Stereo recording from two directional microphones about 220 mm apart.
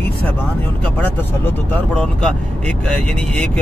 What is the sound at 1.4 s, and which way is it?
Speech, 5° left (ahead or behind).